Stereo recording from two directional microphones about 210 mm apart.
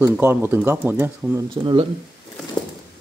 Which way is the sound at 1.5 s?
25° right (ahead or behind).